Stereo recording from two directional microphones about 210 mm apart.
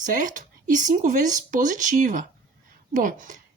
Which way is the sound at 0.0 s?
40° right (ahead or behind).